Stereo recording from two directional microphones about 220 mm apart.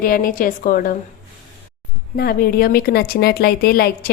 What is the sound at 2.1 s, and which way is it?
A woman's voice, 45° left (ahead or behind).